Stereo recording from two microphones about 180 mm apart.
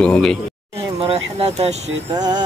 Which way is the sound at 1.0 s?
30° right (ahead or behind).